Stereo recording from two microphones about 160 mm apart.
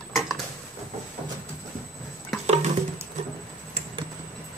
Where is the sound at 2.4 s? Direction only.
45° right (ahead or behind).